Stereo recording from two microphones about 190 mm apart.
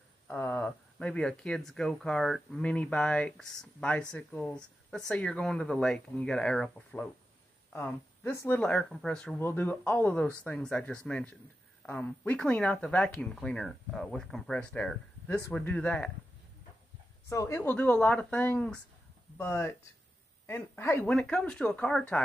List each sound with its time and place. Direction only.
0.3 s speech: 10° left (ahead or behind)
17.3 s speech: 15° left (ahead or behind)